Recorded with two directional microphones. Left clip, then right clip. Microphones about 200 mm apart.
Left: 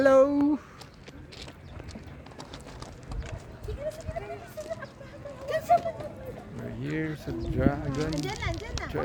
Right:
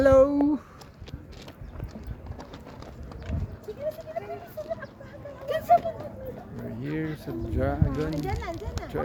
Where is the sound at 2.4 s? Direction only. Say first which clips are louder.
Even; 45° left (ahead or behind).